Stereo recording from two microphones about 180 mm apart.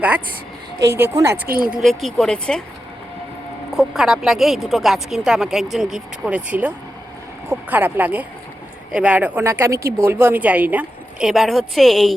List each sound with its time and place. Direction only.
0.9 s speech: 15° right (ahead or behind)
1.5 s speech: 55° right (ahead or behind)
1.7 s speech: centre (ahead or behind)
3.8 s speech: 5° right (ahead or behind)